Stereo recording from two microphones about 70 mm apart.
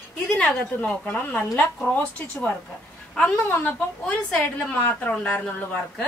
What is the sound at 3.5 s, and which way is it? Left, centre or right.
Speech, left.